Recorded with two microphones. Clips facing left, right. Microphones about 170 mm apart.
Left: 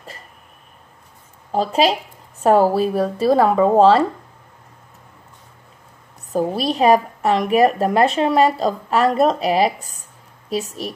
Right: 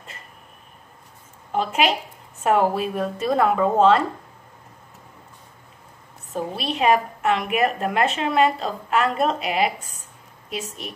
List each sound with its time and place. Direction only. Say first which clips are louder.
1.5 s a woman's voice: left 4 dB; 35° left (ahead or behind)
6.3 s a woman's voice: left 7 dB; 35° left (ahead or behind)